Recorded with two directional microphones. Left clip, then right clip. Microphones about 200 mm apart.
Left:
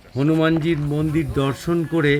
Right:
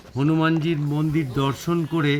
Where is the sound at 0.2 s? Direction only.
15° left (ahead or behind).